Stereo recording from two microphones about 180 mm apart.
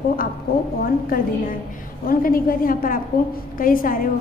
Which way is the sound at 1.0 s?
50° left (ahead or behind).